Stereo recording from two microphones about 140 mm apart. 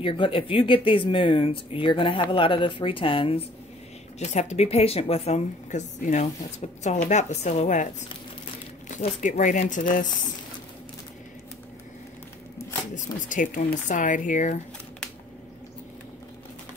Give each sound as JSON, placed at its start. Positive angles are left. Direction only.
{"t": 0.0, "sound": "speech", "side_deg": 40}
{"t": 4.2, "sound": "speech", "side_deg": 55}
{"t": 12.5, "sound": "speech", "side_deg": 65}